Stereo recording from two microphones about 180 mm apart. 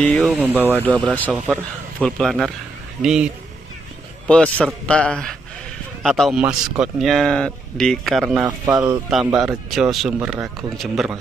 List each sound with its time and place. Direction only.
0.0 s speech: 10° left (ahead or behind)
0.3 s speech: 10° right (ahead or behind)
0.8 s speech: 5° left (ahead or behind)
4.3 s speech: 5° left (ahead or behind)
8.7 s speech: 20° right (ahead or behind)
9.3 s speech: centre (ahead or behind)